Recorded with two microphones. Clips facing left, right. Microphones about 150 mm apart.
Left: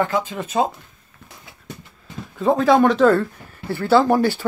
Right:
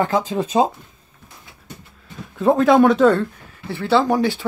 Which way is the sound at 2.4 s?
Centre (ahead or behind).